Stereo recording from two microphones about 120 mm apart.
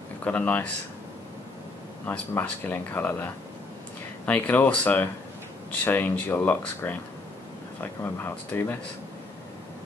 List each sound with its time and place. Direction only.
0.2 s speech: 15° left (ahead or behind)
2.0 s speech: 15° left (ahead or behind)
4.3 s speech: 15° left (ahead or behind)